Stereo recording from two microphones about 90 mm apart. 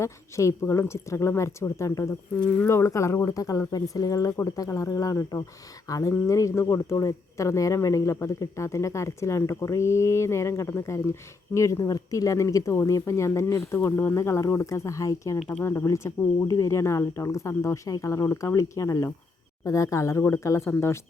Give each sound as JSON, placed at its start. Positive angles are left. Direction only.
{"t": 0.0, "sound": "speech", "side_deg": 35}